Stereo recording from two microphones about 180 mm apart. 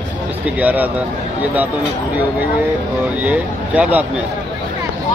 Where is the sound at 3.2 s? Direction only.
10° right (ahead or behind).